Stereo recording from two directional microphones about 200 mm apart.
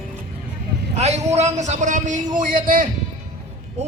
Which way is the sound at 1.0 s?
35° right (ahead or behind).